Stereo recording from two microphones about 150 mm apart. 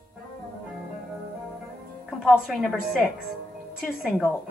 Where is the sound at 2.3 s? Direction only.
Centre (ahead or behind).